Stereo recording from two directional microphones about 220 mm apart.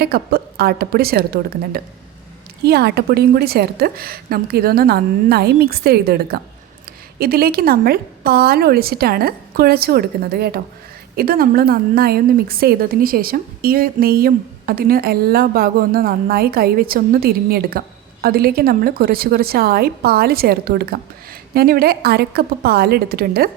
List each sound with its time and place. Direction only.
0.0 s a woman's voice: 45° right (ahead or behind)